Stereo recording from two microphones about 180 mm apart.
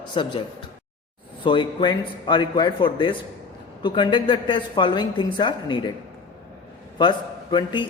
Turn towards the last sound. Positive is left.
turn(degrees=25)  # may be behind; listen again after turning